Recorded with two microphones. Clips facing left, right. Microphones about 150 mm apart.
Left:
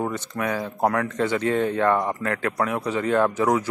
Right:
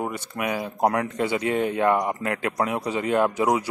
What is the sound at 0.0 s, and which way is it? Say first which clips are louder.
Speech: left 2 dB; 15° right (ahead or behind).